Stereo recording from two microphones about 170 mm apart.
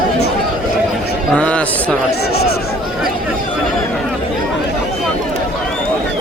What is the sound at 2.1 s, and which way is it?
Speech, 70° left (ahead or behind).